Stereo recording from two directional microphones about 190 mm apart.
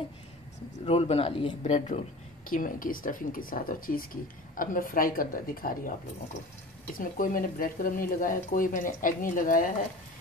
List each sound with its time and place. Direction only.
0.8 s a man's voice: 35° left (ahead or behind); by 5.9 s 50° left (ahead or behind)
7.0 s speech: 45° left (ahead or behind)